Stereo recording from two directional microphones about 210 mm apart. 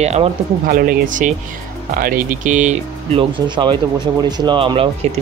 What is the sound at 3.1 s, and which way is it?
Speech, 20° right (ahead or behind).